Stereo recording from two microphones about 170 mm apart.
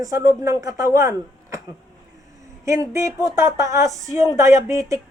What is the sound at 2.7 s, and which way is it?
Speech, 15° right (ahead or behind).